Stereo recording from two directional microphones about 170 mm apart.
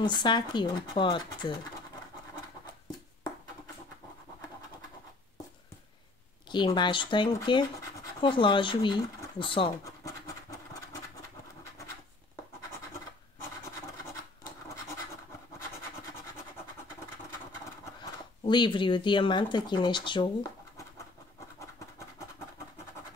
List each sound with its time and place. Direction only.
0.0 s speech: 25° left (ahead or behind)
6.5 s speech: 25° left (ahead or behind)
8.2 s a sound: 30° left (ahead or behind)
18.4 s speech: 25° left (ahead or behind)